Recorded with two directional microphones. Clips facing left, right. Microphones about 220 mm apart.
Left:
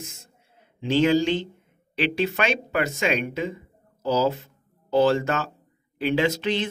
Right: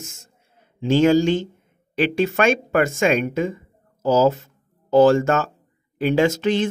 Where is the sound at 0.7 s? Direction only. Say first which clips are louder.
Right 4 dB; 45° right (ahead or behind).